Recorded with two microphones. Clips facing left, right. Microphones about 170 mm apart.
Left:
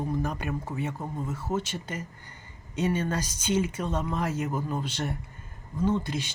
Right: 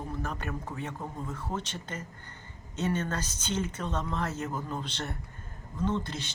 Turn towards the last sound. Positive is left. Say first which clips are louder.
# left 4 dB
turn(degrees=10)  # may be behind; listen again after turning